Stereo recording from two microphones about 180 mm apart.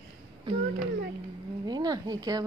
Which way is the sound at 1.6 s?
20° right (ahead or behind).